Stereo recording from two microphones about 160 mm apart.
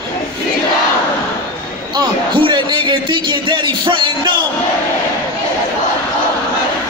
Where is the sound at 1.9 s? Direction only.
30° right (ahead or behind).